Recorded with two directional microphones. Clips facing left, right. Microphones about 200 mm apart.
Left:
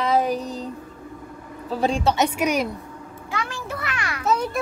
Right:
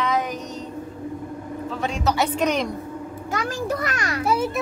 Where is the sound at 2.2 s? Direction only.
10° left (ahead or behind).